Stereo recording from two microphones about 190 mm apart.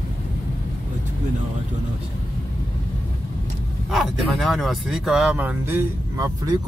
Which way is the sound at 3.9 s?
Centre (ahead or behind).